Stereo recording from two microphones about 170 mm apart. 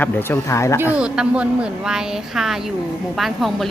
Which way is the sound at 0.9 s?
5° right (ahead or behind).